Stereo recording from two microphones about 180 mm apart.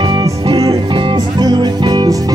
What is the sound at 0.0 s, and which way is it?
Music, 25° right (ahead or behind).